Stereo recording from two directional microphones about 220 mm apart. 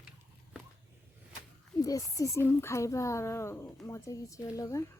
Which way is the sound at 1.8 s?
15° left (ahead or behind).